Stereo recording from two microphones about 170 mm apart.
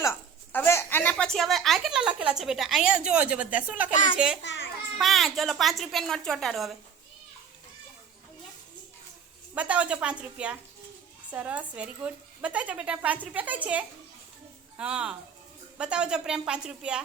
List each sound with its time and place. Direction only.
0.0 s a sound: 15° left (ahead or behind)
1.1 s a woman's voice: centre (ahead or behind)
4.4 s babbling: 90° left
4.9 s a woman's voice: centre (ahead or behind)
9.6 s a woman's voice: 5° right (ahead or behind)